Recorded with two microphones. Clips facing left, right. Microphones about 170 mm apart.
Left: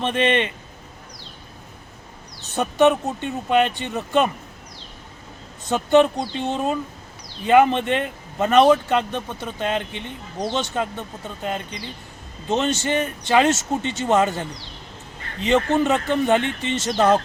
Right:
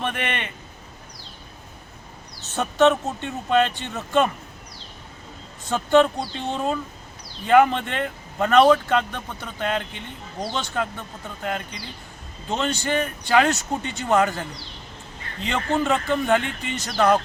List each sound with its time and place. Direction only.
0.0 s speech: 25° left (ahead or behind)
2.6 s speech: 15° left (ahead or behind)
5.6 s speech: 20° left (ahead or behind)